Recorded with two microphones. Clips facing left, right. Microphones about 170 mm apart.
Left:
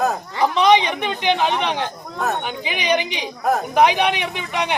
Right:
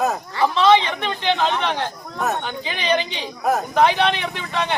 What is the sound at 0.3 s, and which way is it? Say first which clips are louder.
Speech: even; 15° left (ahead or behind).